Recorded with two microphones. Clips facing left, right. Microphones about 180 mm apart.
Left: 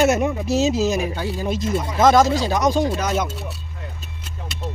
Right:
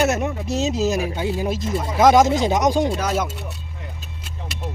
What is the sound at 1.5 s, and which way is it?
Speech, centre (ahead or behind).